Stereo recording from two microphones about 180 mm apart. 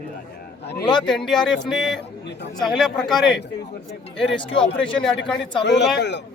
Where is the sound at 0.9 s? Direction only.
25° left (ahead or behind).